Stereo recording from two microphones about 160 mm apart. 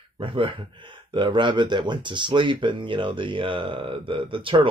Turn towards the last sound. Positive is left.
turn(degrees=-30)  # may be behind; listen again after turning